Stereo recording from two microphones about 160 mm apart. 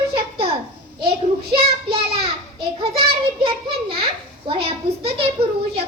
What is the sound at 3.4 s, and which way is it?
A child's voice, 30° right (ahead or behind).